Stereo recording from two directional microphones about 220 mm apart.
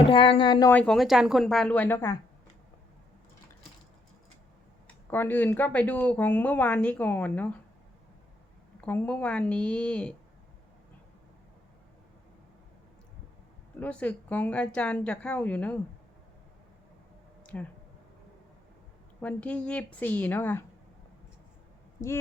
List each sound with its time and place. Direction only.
0.1 s speech: 25° left (ahead or behind)
0.7 s speech: 5° left (ahead or behind)
4.9 s speech: 10° left (ahead or behind)
8.8 s speech: 5° left (ahead or behind)
13.7 s speech: 5° left (ahead or behind)
17.4 s a sound: 5° left (ahead or behind)
19.2 s speech: 5° left (ahead or behind)